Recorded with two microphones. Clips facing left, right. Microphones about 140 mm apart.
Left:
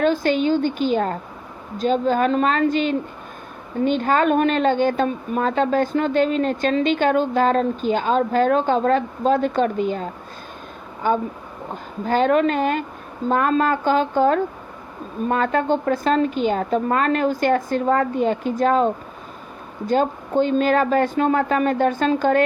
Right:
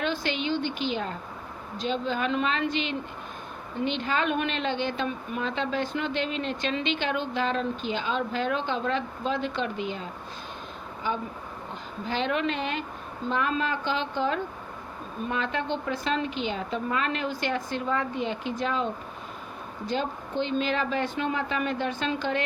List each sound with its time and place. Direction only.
0.0 s a woman's voice: 45° left (ahead or behind)
19.9 s a woman's voice: 45° left (ahead or behind)